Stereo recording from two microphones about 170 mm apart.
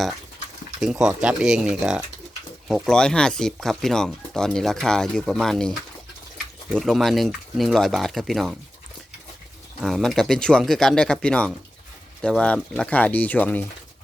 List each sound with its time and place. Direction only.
0.8 s speech: 5° right (ahead or behind)
9.8 s speech: centre (ahead or behind)